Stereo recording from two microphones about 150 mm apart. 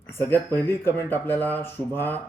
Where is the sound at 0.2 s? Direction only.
15° left (ahead or behind).